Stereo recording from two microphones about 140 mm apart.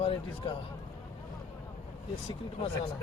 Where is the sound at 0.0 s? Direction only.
40° left (ahead or behind).